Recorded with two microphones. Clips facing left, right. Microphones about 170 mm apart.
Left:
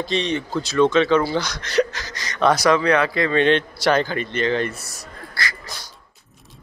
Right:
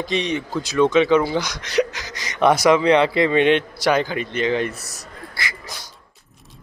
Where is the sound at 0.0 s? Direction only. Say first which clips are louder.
Even; 15° right (ahead or behind).